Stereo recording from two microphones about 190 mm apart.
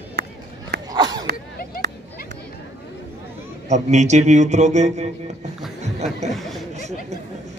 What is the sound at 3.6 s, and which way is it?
Speech, 40° right (ahead or behind).